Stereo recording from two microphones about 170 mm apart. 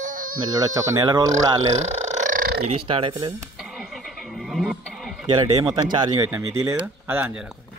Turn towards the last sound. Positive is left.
turn(degrees=-10)  # may be behind; listen again after turning